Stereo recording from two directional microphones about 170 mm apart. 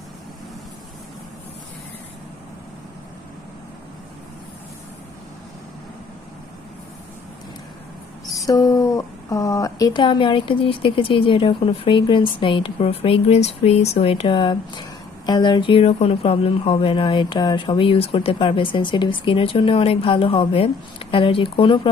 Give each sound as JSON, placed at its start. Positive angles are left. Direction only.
{"t": 8.3, "sound": "speech", "side_deg": 20}